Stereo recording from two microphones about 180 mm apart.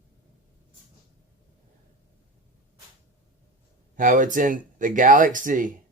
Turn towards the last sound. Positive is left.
turn(degrees=-45)  # may be behind; listen again after turning